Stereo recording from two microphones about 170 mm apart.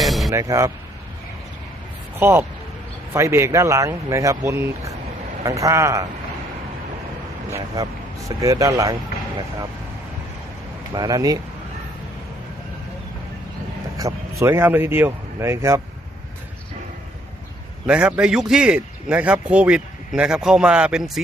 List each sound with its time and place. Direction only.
0.0 s music: centre (ahead or behind)
0.3 s speech: 20° right (ahead or behind)
2.1 s speech: 10° right (ahead or behind)
8.4 s speech: 20° right (ahead or behind)
10.9 s speech: 25° right (ahead or behind)
14.0 s speech: 15° right (ahead or behind)
17.8 s a man's voice: 5° right (ahead or behind)